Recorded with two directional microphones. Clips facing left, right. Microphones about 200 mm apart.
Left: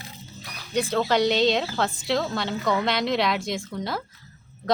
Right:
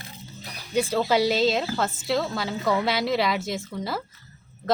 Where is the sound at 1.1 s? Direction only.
5° right (ahead or behind).